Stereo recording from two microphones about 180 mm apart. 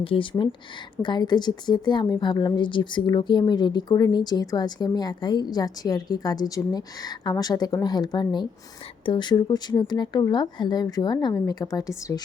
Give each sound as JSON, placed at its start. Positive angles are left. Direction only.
{"t": 0.0, "sound": "a woman's voice", "side_deg": 30}